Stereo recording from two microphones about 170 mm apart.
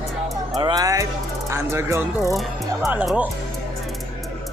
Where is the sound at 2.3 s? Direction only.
Centre (ahead or behind).